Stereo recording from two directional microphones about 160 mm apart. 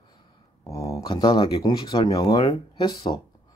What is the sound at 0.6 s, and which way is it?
Speech, 20° left (ahead or behind).